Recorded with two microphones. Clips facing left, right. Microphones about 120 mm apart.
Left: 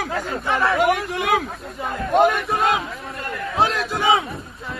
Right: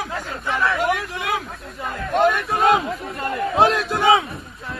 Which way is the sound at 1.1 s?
60° left (ahead or behind).